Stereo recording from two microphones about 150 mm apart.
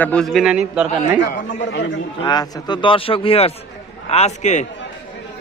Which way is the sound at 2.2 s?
30° left (ahead or behind).